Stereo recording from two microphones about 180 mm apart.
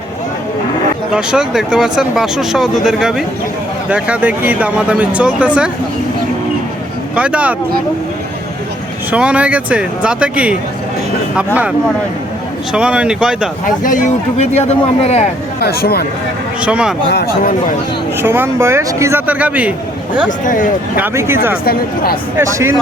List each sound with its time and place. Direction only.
1.1 s speech: 5° right (ahead or behind)
7.2 s speech: 5° right (ahead or behind)
9.1 s speech: 5° right (ahead or behind)
12.7 s speech: 5° right (ahead or behind)
13.7 s speech: 45° left (ahead or behind)
15.6 s speech: 60° left (ahead or behind)
16.6 s speech: 5° right (ahead or behind)
17.1 s speech: 60° left (ahead or behind)
18.2 s speech: 15° right (ahead or behind)
20.2 s speech: 45° left (ahead or behind)
21.0 s speech: 15° right (ahead or behind)
21.6 s speech: 55° left (ahead or behind)
22.4 s speech: 15° right (ahead or behind)